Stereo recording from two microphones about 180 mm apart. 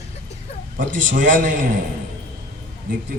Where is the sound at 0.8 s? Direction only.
45° right (ahead or behind).